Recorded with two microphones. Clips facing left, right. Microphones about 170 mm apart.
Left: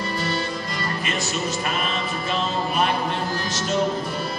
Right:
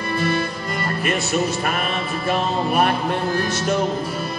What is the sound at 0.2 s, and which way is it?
Music, 55° right (ahead or behind).